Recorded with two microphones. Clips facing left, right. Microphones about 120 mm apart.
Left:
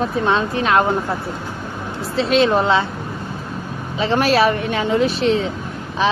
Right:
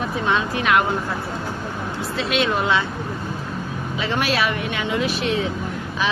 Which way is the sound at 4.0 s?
35° left (ahead or behind).